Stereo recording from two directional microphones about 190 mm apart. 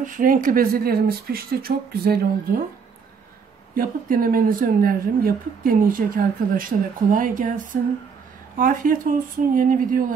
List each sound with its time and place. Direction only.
0.0 s speech: 45° right (ahead or behind)
3.7 s speech: 50° right (ahead or behind)